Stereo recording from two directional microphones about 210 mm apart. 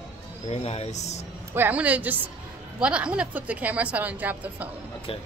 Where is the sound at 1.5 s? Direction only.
10° right (ahead or behind).